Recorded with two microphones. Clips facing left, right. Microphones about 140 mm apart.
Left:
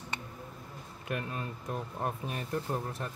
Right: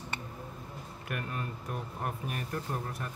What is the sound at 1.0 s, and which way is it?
Speech, 25° left (ahead or behind).